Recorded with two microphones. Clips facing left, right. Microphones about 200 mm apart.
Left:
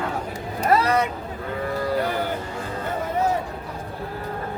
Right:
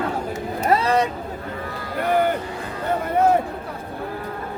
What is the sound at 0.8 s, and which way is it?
Vehicle, 30° right (ahead or behind).